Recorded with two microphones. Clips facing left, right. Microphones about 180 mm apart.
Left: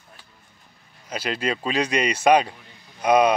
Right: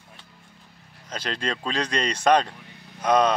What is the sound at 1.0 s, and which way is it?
Speech, 10° left (ahead or behind).